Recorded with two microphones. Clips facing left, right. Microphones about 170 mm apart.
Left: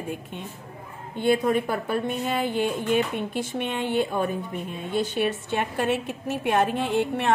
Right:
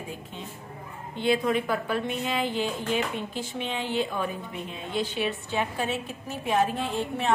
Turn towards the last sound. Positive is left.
turn(degrees=70)  # may be behind; listen again after turning